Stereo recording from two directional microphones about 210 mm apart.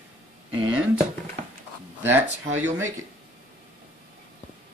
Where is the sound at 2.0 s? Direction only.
10° right (ahead or behind).